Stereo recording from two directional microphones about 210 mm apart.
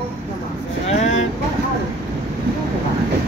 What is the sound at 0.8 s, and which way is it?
Vehicle, 35° left (ahead or behind).